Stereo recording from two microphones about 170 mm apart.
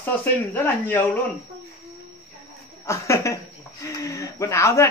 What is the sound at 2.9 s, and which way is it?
Speech, 15° left (ahead or behind).